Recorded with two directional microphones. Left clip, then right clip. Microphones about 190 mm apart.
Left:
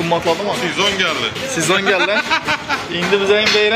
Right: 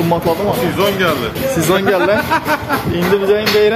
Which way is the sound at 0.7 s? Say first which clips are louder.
Even; 50° right (ahead or behind).